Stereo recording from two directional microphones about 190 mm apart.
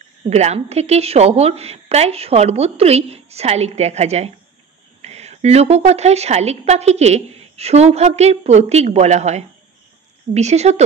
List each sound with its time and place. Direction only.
0.3 s a woman's voice: 35° right (ahead or behind)